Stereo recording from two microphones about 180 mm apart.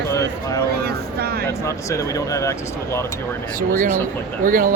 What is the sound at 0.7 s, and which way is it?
Speech, 60° right (ahead or behind).